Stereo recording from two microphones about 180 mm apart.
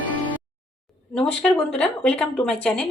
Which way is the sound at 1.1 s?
5° left (ahead or behind).